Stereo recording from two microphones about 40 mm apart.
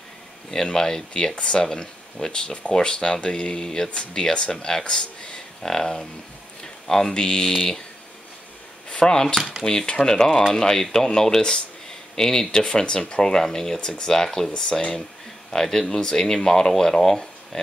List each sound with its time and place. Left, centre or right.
0.7 s speech: centre
6.6 s a sound: centre
7.2 s speech: centre
8.8 s speech: left
14.7 s speech: left
15.5 s speech: centre